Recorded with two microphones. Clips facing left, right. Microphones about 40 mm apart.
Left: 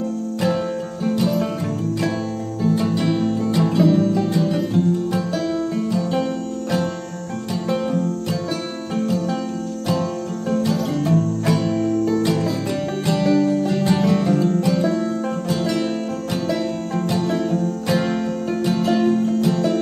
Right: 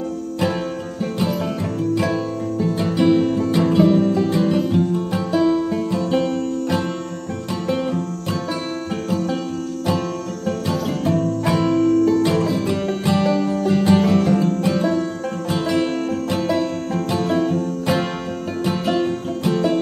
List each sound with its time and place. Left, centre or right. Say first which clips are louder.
1.2 s music: even; centre
2.7 s music: right 4 dB; centre
6.0 s music: right 2 dB; centre
7.8 s music: left 2 dB; right
10.6 s music: left 1 dB; right
13.0 s music: left 2 dB; centre